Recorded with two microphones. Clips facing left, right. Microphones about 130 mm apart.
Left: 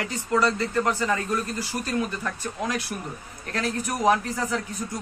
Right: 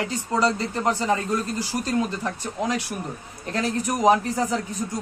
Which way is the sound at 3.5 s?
25° right (ahead or behind).